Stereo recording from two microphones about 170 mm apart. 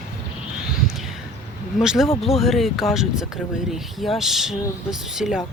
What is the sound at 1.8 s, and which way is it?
Speech, 5° right (ahead or behind).